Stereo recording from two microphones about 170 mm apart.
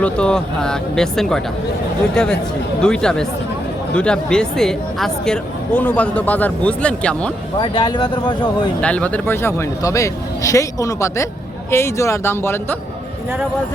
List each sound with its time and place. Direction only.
0.0 s speech: 5° left (ahead or behind)
7.6 s speech: 25° left (ahead or behind)
8.8 s speech: 5° left (ahead or behind)